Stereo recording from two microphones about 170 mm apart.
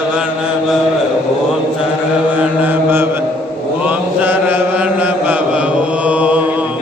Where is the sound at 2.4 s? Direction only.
10° right (ahead or behind).